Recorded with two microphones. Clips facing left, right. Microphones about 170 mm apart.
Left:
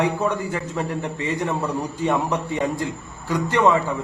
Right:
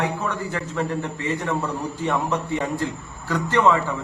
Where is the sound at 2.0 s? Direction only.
15° left (ahead or behind).